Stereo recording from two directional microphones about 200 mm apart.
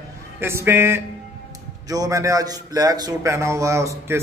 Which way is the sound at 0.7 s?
10° right (ahead or behind).